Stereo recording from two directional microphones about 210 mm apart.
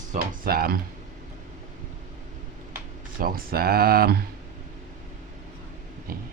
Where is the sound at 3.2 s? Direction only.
45° right (ahead or behind).